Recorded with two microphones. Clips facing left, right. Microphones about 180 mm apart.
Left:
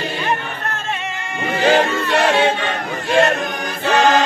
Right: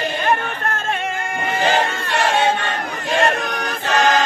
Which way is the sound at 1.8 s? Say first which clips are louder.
Left 4 dB; 60° left (ahead or behind).